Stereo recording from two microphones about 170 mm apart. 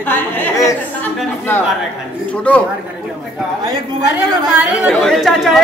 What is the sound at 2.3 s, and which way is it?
Speech, 10° left (ahead or behind).